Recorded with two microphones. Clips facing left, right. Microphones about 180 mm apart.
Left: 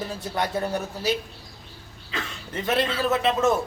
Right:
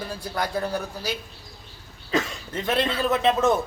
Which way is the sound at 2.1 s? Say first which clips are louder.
Right 9 dB; 40° right (ahead or behind).